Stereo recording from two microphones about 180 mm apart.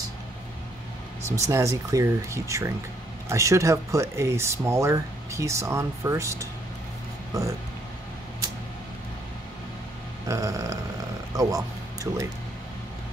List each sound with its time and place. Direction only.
1.3 s speech: 15° right (ahead or behind)
10.2 s speech: 15° right (ahead or behind)